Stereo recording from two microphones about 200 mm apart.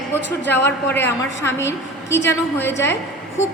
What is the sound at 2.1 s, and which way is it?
Speech, 60° left (ahead or behind).